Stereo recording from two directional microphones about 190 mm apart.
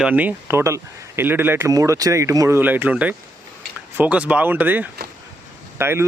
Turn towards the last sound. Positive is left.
turn(degrees=-15)  # may be behind; listen again after turning